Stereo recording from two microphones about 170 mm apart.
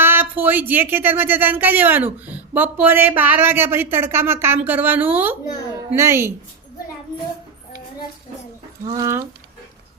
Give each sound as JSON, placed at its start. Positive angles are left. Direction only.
{"t": 0.0, "sound": "speech", "side_deg": -15}
{"t": 8.9, "sound": "speech", "side_deg": -20}